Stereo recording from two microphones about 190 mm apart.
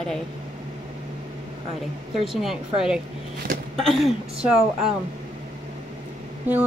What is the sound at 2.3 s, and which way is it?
Speech, centre (ahead or behind).